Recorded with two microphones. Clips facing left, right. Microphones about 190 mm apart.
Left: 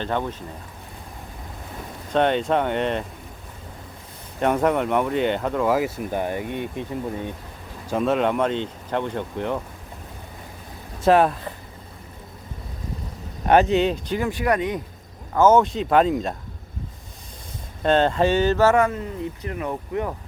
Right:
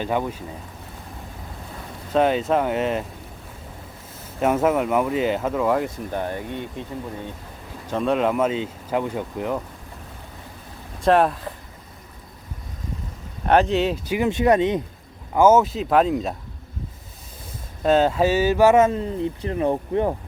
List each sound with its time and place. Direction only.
0.0 s speech: 10° right (ahead or behind)
2.1 s speech: 5° right (ahead or behind)
4.4 s speech: 5° right (ahead or behind); by 6.8 s 15° left (ahead or behind)
7.9 s speech: 5° left (ahead or behind)
11.0 s speech: centre (ahead or behind)
13.5 s speech: centre (ahead or behind)
14.2 s speech: 25° right (ahead or behind)
15.4 s speech: 5° right (ahead or behind)
17.8 s speech: 5° right (ahead or behind); by 20.1 s 30° right (ahead or behind)